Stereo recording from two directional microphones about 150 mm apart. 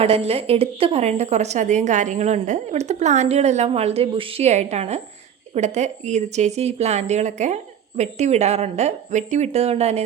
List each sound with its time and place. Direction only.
0.0 s a woman's voice: 40° right (ahead or behind)